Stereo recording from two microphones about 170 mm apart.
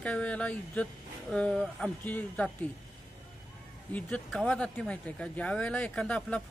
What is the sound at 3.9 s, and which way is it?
Speech, 5° left (ahead or behind).